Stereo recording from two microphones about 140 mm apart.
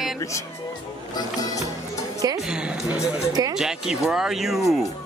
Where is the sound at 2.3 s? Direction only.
5° right (ahead or behind).